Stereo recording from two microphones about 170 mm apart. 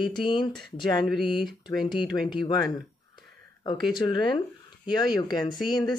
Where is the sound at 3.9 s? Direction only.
25° left (ahead or behind).